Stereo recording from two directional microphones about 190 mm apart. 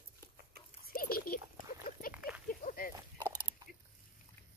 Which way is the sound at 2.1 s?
10° right (ahead or behind).